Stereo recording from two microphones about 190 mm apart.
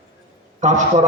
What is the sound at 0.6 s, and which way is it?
Speech, 40° right (ahead or behind).